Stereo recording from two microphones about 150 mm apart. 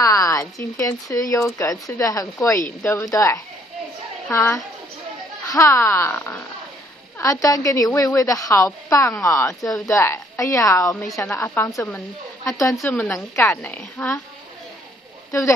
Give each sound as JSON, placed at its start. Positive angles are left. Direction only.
{"t": 0.0, "sound": "a woman's voice", "side_deg": 20}